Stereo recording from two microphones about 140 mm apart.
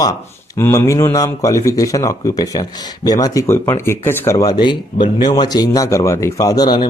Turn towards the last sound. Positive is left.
turn(degrees=30)  # may be behind; listen again after turning